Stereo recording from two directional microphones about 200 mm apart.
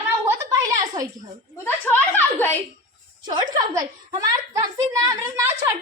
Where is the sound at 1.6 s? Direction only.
10° left (ahead or behind).